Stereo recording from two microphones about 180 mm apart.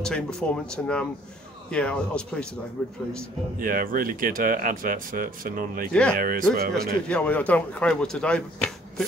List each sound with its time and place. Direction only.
0.0 s a man's voice: 5° left (ahead or behind)
3.5 s speech: 50° right (ahead or behind)
6.7 s a man's voice: 5° left (ahead or behind)